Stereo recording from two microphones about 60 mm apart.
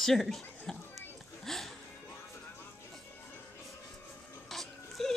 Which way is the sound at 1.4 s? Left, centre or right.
Centre.